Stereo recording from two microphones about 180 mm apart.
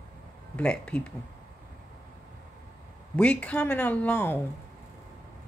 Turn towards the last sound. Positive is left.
turn(degrees=10)  # may be behind; listen again after turning